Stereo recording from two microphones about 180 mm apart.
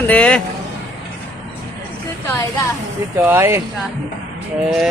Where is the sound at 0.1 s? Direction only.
5° left (ahead or behind).